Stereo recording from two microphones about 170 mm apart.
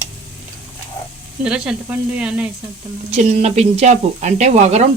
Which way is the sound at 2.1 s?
5° right (ahead or behind).